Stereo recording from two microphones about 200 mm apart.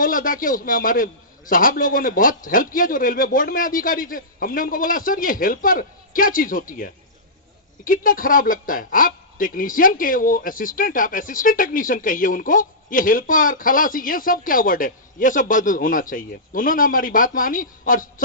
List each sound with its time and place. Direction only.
0.0 s speech: 45° left (ahead or behind)
7.9 s speech: 45° left (ahead or behind)